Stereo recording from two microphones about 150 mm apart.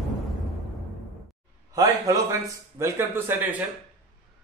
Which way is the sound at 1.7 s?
20° right (ahead or behind).